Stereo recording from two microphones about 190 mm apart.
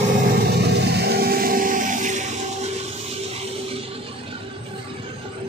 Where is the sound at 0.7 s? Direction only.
60° right (ahead or behind); by 2.7 s 40° right (ahead or behind).